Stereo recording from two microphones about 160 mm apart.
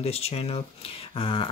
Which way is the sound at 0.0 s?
40° left (ahead or behind).